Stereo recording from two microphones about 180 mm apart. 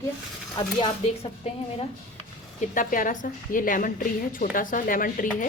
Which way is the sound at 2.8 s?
45° left (ahead or behind).